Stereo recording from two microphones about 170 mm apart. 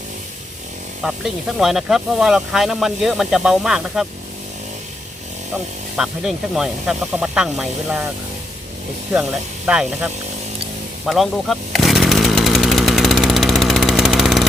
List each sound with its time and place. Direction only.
1.0 s speech: centre (ahead or behind)
6.0 s speech: 5° right (ahead or behind)
9.6 s speech: 5° right (ahead or behind)
11.0 s chainsaw: centre (ahead or behind)